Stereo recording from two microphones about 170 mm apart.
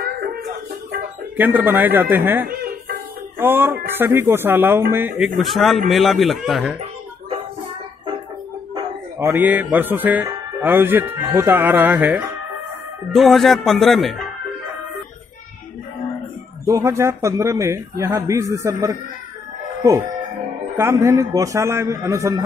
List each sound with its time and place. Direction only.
0.0 s music: 60° right (ahead or behind)
1.3 s a man's voice: 10° right (ahead or behind)
5.4 s speech: centre (ahead or behind)
8.7 s speech: 15° right (ahead or behind)
13.1 s speech: centre (ahead or behind)
16.6 s a man's voice: 15° right (ahead or behind)
20.7 s a man's voice: 15° right (ahead or behind)